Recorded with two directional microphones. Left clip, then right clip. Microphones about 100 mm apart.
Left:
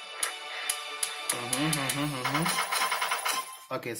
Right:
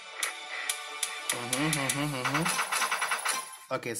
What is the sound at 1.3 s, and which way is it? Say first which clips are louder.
Music: even; 45° right (ahead or behind).